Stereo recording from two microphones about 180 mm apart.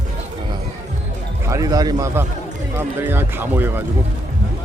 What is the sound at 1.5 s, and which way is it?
Speech, 20° right (ahead or behind).